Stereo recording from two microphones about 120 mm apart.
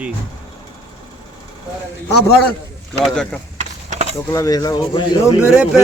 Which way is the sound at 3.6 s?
75° right (ahead or behind).